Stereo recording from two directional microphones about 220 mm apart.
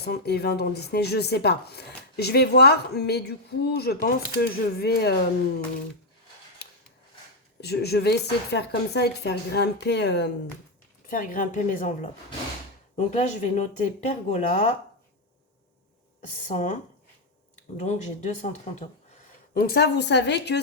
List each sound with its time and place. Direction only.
0.0 s speech: 45° left (ahead or behind)
7.6 s speech: 45° left (ahead or behind)
11.0 s speech: 40° left (ahead or behind)
13.0 s speech: 35° left (ahead or behind)
16.2 s speech: 35° left (ahead or behind)
17.7 s speech: 30° left (ahead or behind)
19.5 s speech: 45° left (ahead or behind)